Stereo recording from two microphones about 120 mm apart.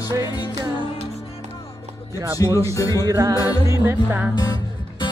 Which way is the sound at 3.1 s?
30° right (ahead or behind).